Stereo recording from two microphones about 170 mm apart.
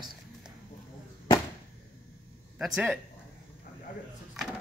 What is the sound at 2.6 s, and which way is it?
Speech, centre (ahead or behind).